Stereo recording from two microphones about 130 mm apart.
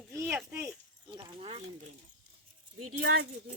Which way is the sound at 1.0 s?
40° right (ahead or behind).